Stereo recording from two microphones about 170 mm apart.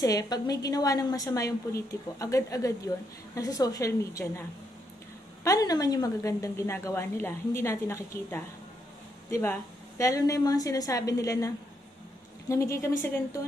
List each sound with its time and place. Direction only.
0.0 s a woman's voice: 20° left (ahead or behind)